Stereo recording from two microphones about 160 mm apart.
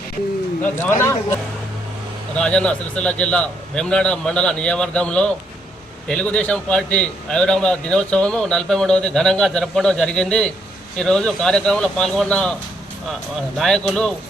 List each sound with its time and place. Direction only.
0.8 s a man's voice: 15° left (ahead or behind)
2.3 s a man's voice: 5° left (ahead or behind)
13.6 s a man's voice: 5° left (ahead or behind)